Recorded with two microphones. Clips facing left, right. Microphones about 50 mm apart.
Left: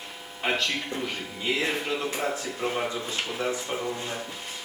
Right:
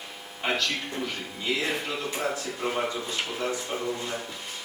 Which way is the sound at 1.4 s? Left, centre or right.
Centre.